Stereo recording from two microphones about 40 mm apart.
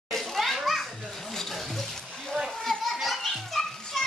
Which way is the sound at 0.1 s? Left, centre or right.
Centre.